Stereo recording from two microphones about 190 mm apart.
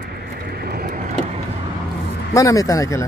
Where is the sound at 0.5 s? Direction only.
55° right (ahead or behind).